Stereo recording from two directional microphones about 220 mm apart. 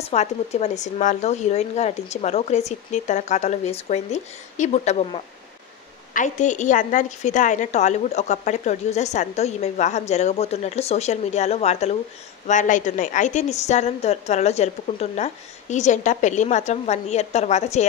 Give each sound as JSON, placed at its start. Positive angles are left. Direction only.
{"t": 0.1, "sound": "a woman's voice", "side_deg": 30}